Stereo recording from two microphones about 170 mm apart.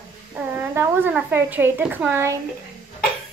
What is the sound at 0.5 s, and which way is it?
A woman's voice, 15° right (ahead or behind).